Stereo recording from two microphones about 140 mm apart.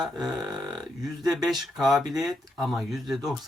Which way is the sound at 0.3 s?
30° right (ahead or behind).